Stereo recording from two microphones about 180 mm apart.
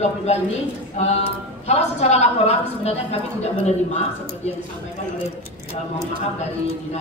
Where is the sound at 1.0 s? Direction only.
35° left (ahead or behind).